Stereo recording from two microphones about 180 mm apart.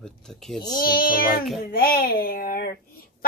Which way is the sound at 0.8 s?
55° left (ahead or behind).